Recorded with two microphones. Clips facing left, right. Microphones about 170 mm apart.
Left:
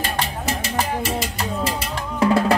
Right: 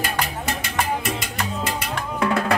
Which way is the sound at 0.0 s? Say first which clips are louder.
Left 1 dB; 30° left (ahead or behind).